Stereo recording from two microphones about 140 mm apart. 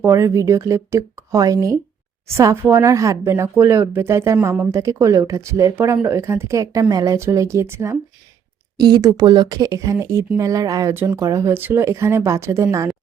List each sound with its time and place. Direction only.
0.0 s speech: 20° right (ahead or behind)